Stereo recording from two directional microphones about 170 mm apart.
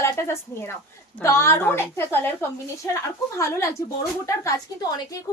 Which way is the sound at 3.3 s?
20° left (ahead or behind).